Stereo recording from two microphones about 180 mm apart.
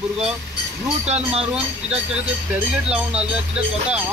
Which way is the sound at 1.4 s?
5° right (ahead or behind).